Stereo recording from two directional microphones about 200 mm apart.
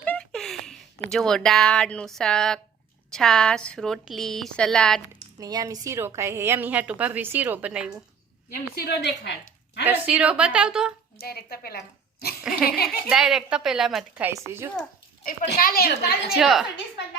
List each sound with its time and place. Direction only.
0.0 s a sound: 5° left (ahead or behind)
3.1 s speech: 5° left (ahead or behind)
5.4 s a woman's voice: 20° right (ahead or behind)
8.7 s a woman's voice: 55° left (ahead or behind)
9.8 s speech: 5° right (ahead or behind)
11.2 s a woman's voice: 50° left (ahead or behind)
12.4 s a sound: centre (ahead or behind)
12.6 s a woman's voice: 50° left (ahead or behind)
13.1 s speech: 5° right (ahead or behind)
15.2 s a woman's voice: 45° left (ahead or behind)
16.3 s speech: centre (ahead or behind)